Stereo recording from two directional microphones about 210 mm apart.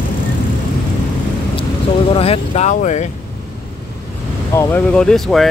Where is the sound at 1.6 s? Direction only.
25° left (ahead or behind).